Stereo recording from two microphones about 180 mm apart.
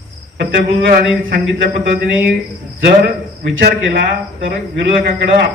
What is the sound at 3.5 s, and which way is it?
A man's voice, 75° right (ahead or behind).